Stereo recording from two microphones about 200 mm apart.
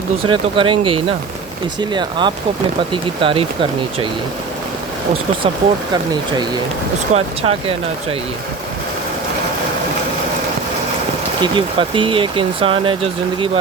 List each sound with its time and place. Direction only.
0.3 s speech: 25° right (ahead or behind)
7.1 s speech: 30° right (ahead or behind)
11.4 s speech: 25° right (ahead or behind)